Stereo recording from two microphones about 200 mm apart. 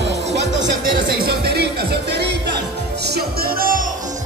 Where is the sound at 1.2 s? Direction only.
50° right (ahead or behind).